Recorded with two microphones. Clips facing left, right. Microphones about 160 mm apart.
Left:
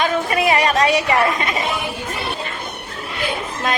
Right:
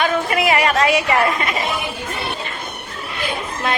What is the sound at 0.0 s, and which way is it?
Chatter, 35° left (ahead or behind).